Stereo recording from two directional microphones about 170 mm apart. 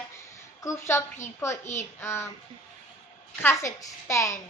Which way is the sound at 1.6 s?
45° left (ahead or behind).